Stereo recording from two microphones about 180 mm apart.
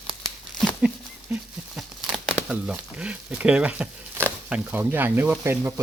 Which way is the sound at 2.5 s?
5° right (ahead or behind).